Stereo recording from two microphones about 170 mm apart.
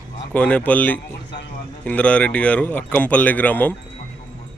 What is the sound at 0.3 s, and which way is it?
Speech, 10° left (ahead or behind).